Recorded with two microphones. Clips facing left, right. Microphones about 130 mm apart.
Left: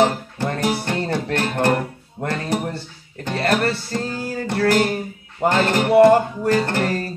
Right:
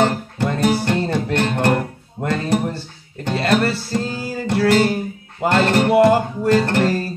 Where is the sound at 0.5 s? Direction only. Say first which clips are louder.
Right 4 dB; 25° right (ahead or behind).